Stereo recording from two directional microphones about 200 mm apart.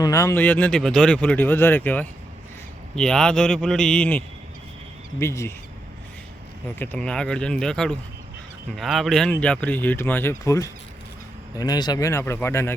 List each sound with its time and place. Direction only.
0.0 s a man's voice: 15° left (ahead or behind)
5.2 s speech: 15° left (ahead or behind)
6.7 s a man's voice: 10° left (ahead or behind)